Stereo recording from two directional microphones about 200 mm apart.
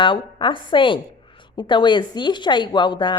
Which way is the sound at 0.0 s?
25° left (ahead or behind).